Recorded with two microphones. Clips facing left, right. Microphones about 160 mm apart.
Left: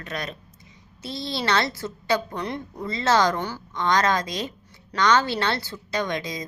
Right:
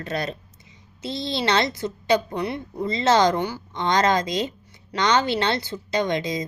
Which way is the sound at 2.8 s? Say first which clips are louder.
Right 3 dB; 20° right (ahead or behind).